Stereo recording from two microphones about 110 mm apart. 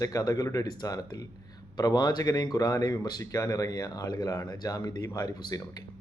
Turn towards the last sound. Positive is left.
turn(degrees=35)  # may be behind; listen again after turning